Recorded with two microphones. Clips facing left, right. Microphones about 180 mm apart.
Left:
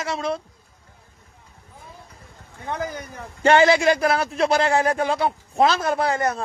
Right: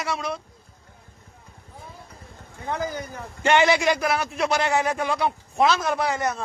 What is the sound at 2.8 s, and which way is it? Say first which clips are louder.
Speech: right 1 dB; 20° right (ahead or behind).